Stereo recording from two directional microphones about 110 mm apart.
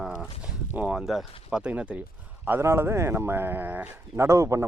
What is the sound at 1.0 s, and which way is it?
Speech, centre (ahead or behind).